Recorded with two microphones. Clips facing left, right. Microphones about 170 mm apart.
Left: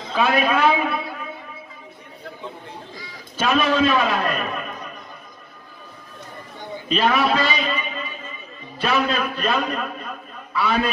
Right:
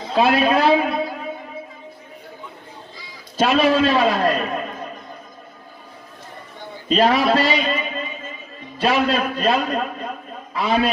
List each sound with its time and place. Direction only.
0.1 s a man's voice: 35° right (ahead or behind)
3.3 s a man's voice: 35° right (ahead or behind)
6.9 s a man's voice: 35° right (ahead or behind)